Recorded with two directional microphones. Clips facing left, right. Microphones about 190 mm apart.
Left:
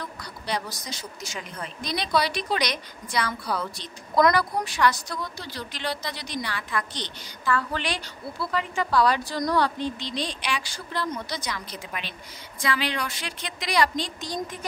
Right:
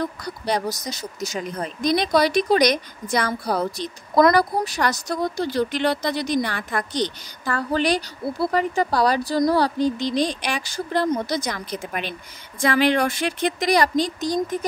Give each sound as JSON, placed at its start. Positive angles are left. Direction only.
{"t": 0.0, "sound": "speech", "side_deg": -45}